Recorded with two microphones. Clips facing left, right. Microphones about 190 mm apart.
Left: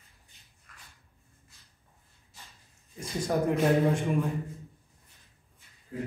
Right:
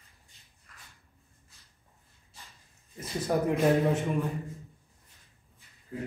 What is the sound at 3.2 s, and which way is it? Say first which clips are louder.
Speech: even; 5° right (ahead or behind).